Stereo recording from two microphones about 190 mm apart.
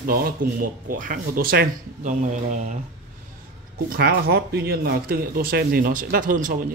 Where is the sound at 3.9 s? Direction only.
55° right (ahead or behind).